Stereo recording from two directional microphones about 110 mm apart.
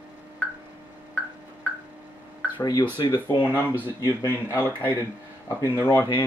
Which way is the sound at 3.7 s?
20° right (ahead or behind).